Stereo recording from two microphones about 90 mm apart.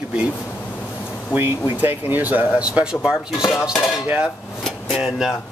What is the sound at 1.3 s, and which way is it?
Speech, 25° right (ahead or behind).